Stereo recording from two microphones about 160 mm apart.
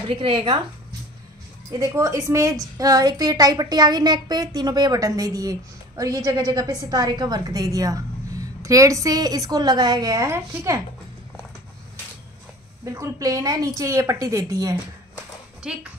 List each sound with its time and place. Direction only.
0.1 s speech: 35° right (ahead or behind)
1.7 s a woman's voice: 20° right (ahead or behind)
12.8 s a woman's voice: 20° right (ahead or behind)
15.7 s speech: 5° right (ahead or behind)